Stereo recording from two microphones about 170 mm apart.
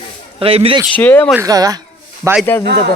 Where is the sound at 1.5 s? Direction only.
20° right (ahead or behind).